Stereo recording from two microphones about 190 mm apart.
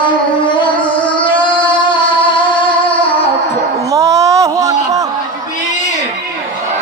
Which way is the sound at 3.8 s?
15° right (ahead or behind).